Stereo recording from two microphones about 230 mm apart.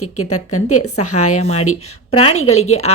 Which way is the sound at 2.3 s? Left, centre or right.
Left.